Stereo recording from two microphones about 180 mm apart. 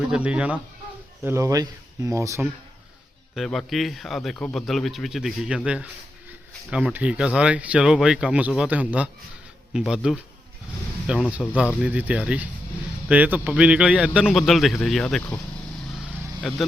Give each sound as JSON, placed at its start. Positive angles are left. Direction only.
{"t": 0.1, "sound": "speech", "side_deg": -5}
{"t": 3.3, "sound": "a man's voice", "side_deg": 0}
{"t": 16.4, "sound": "a man's voice", "side_deg": 0}